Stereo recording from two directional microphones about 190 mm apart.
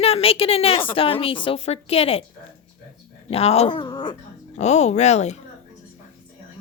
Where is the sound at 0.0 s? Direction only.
30° left (ahead or behind).